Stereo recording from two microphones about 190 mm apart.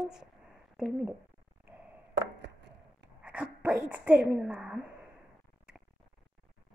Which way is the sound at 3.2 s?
5° right (ahead or behind).